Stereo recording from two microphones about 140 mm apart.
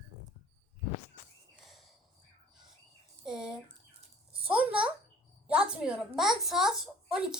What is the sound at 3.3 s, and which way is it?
Speech, 5° right (ahead or behind).